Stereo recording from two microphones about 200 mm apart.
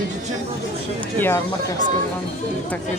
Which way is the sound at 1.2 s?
10° left (ahead or behind).